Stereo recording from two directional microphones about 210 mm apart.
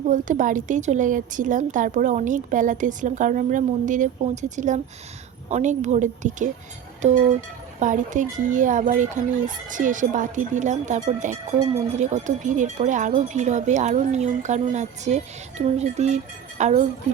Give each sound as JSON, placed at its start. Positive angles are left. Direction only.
{"t": 0.1, "sound": "speech", "side_deg": -40}